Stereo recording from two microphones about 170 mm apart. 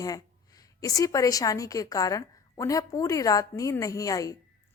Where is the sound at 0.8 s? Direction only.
20° left (ahead or behind).